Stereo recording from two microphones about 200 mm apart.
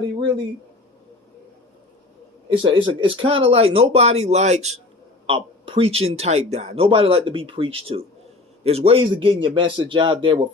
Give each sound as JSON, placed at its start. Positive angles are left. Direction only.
{"t": 2.5, "sound": "speech", "side_deg": -25}